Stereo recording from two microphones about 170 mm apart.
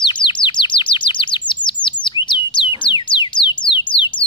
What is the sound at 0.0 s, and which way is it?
Chirp, 30° left (ahead or behind).